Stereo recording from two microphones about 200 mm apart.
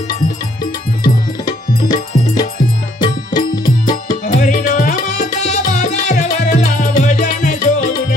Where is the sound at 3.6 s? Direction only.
20° left (ahead or behind).